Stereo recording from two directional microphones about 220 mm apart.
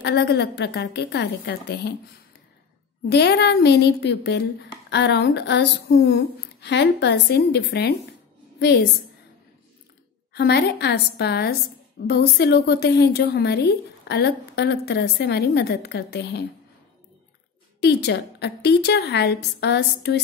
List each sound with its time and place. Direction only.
0.0 s speech: 50° left (ahead or behind)
3.1 s a woman's voice: 50° left (ahead or behind)
10.3 s speech: 50° left (ahead or behind)
17.7 s speech: 50° left (ahead or behind)